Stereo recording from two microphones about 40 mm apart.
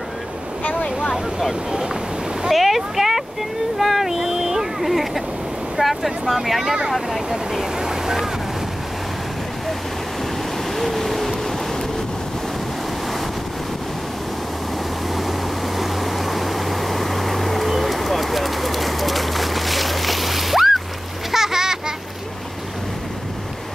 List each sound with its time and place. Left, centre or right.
1.5 s speech: centre
2.5 s speech: centre
3.8 s a sound: centre
5.8 s speech: centre
6.9 s speech: centre
7.2 s speech: centre
10.8 s a sound: centre
15.8 s vehicle: centre
21.3 s splash: centre